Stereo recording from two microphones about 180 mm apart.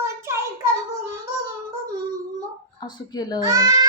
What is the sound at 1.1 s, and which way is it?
Child singing, 15° right (ahead or behind).